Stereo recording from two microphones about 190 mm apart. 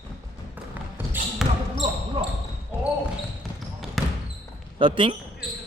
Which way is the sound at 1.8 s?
30° right (ahead or behind).